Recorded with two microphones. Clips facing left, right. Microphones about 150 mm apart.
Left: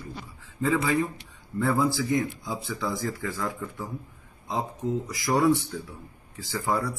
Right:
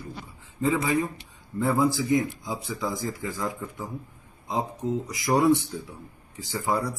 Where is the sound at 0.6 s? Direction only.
20° right (ahead or behind).